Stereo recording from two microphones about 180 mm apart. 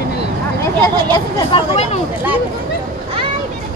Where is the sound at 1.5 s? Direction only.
35° left (ahead or behind).